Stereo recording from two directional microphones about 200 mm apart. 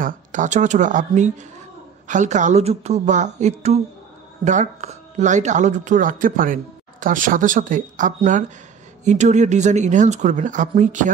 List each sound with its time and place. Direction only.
0.0 s speech: 40° right (ahead or behind)